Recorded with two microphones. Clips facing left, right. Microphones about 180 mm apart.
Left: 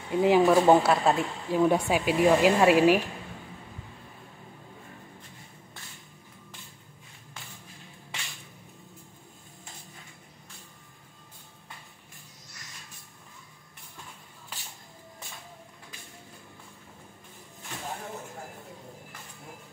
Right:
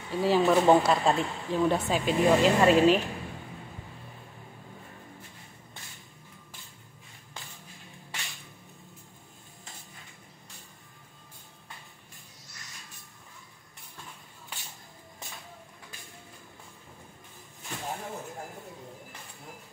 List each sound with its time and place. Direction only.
0.1 s speech: 20° left (ahead or behind)
0.5 s speech: 5° left (ahead or behind)